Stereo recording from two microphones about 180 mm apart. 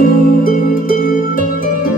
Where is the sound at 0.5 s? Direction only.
50° left (ahead or behind).